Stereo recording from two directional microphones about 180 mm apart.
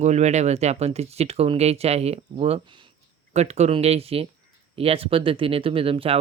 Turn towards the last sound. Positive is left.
turn(degrees=-30)  # may be behind; listen again after turning